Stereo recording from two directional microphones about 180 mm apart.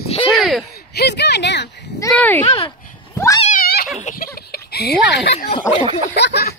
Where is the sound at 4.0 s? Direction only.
50° left (ahead or behind).